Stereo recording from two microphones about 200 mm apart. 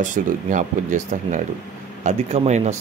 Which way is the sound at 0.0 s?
40° right (ahead or behind).